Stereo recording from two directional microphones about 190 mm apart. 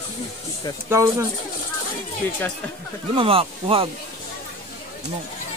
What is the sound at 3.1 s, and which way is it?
Speech, 30° right (ahead or behind).